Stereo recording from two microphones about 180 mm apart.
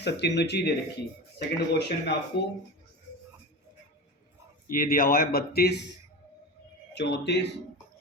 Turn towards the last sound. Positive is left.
turn(degrees=70)  # may be behind; listen again after turning